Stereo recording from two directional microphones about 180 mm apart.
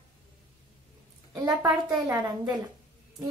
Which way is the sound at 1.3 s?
20° right (ahead or behind).